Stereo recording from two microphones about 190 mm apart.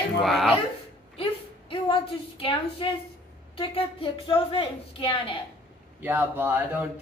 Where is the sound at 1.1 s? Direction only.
30° left (ahead or behind).